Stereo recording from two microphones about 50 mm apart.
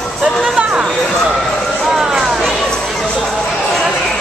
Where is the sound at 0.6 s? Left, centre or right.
Right.